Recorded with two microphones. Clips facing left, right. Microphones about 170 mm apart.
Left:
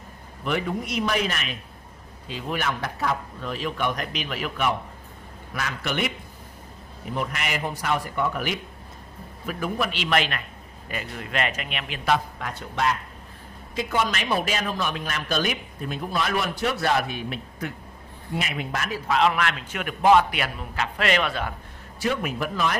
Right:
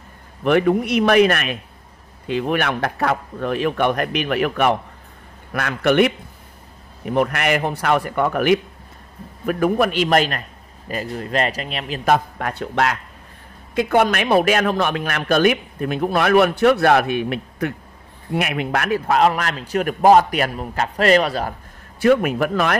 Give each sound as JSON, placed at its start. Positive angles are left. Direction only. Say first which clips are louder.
{"t": 0.4, "sound": "a man's voice", "louder": "right 11 dB", "side_deg": -60}
{"t": 13.7, "sound": "a man's voice", "louder": "right 9 dB", "side_deg": -60}
{"t": 22.0, "sound": "a man's voice", "louder": "right 10 dB", "side_deg": -60}